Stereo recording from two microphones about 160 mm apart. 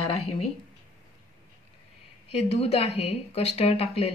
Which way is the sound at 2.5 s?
40° left (ahead or behind).